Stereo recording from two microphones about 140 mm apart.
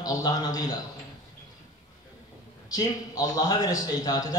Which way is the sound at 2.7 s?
25° left (ahead or behind).